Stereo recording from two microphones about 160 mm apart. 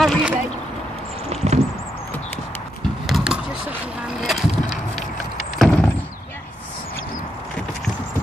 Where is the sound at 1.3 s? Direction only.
40° right (ahead or behind).